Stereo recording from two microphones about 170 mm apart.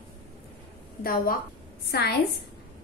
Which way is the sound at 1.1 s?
60° left (ahead or behind).